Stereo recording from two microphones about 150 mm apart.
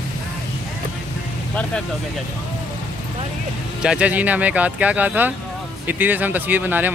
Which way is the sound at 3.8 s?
5° right (ahead or behind).